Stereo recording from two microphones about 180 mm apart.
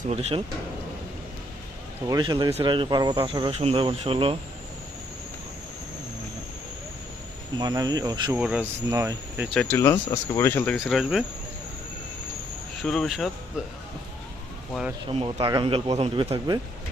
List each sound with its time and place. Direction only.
0.0 s speech: 35° right (ahead or behind)
2.0 s speech: 20° right (ahead or behind)
7.6 s speech: 20° right (ahead or behind)
8.4 s speech: 5° right (ahead or behind)
8.9 s cricket: 15° right (ahead or behind)
9.5 s speech: 10° left (ahead or behind)
10.8 s speech: centre (ahead or behind)
12.8 s speech: centre (ahead or behind)
15.1 s speech: 30° right (ahead or behind)